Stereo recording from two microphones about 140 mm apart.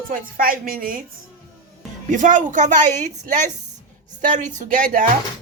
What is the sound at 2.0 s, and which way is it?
A woman's voice, 65° right (ahead or behind).